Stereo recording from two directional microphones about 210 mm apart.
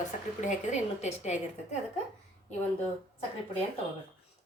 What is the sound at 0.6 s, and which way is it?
A woman's voice, 35° left (ahead or behind).